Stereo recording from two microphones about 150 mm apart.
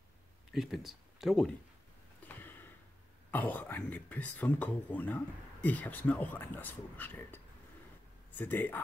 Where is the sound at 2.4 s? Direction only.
15° left (ahead or behind).